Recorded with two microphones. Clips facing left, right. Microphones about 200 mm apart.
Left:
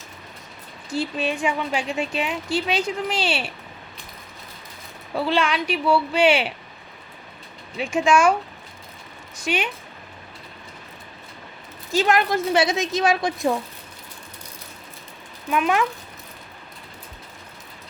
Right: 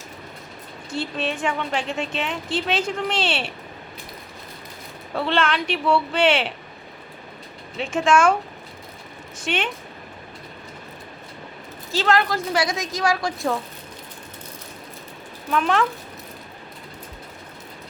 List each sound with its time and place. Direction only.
0.9 s a woman's voice: 5° left (ahead or behind)
5.1 s a woman's voice: 5° left (ahead or behind)
7.8 s a woman's voice: 10° left (ahead or behind)
9.5 s speech: 5° left (ahead or behind)
11.9 s a woman's voice: 15° left (ahead or behind)
15.4 s a woman's voice: 10° left (ahead or behind)